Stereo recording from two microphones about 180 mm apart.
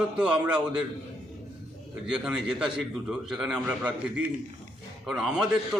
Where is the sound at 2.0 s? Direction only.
5° right (ahead or behind).